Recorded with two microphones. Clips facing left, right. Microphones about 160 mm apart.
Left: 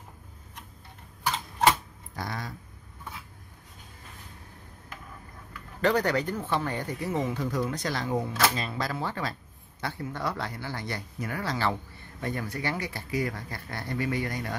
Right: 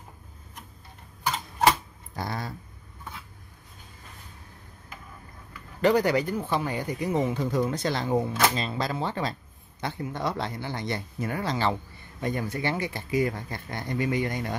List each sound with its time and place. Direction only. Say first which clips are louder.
2.1 s speech: right 3 dB; 30° right (ahead or behind)
5.8 s speech: right 3 dB; 10° right (ahead or behind)